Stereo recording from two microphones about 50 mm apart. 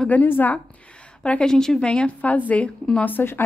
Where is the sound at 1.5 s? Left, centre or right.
Centre.